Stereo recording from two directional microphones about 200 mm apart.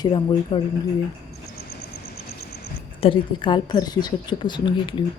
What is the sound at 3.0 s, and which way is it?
A woman's voice, 25° left (ahead or behind).